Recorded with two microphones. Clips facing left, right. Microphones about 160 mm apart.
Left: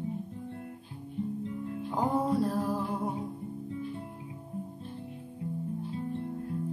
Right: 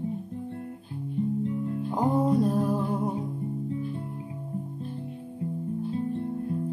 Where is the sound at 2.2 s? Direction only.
20° right (ahead or behind).